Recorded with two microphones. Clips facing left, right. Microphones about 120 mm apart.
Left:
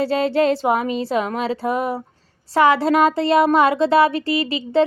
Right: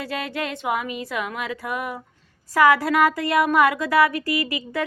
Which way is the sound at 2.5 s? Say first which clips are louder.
Left 2 dB; 25° left (ahead or behind).